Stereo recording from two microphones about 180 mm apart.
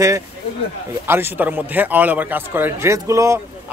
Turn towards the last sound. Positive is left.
turn(degrees=-15)  # may be behind; listen again after turning